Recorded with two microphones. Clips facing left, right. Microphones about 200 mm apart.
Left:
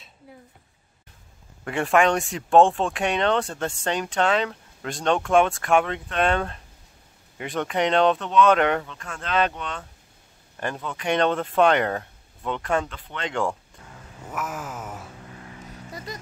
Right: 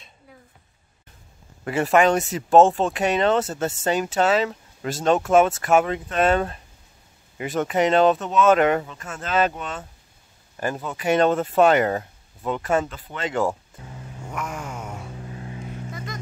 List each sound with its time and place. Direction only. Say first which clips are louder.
1.6 s speech: right 2 dB; 5° right (ahead or behind)
14.2 s a sound: even; 5° left (ahead or behind)
15.2 s vehicle: right 6 dB; 25° right (ahead or behind)